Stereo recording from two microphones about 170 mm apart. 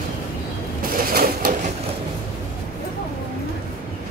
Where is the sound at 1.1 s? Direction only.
60° right (ahead or behind).